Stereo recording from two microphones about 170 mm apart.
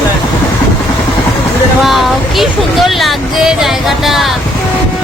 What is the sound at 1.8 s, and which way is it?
Speech, centre (ahead or behind).